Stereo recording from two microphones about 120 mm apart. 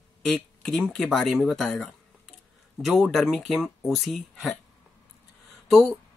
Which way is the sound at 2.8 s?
Centre (ahead or behind).